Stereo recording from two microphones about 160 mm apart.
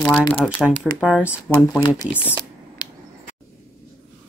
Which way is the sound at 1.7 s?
20° left (ahead or behind).